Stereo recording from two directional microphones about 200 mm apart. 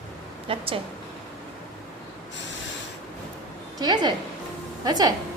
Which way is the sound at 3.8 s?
20° right (ahead or behind).